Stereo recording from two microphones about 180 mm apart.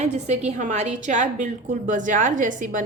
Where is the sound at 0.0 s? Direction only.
40° right (ahead or behind).